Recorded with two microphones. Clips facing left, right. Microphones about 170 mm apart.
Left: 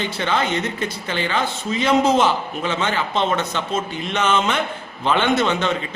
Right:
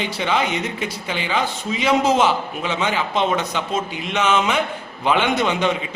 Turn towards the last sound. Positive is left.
turn(degrees=-10)  # may be behind; listen again after turning